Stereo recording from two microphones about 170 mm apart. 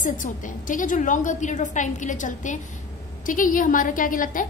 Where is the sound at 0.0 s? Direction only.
50° left (ahead or behind).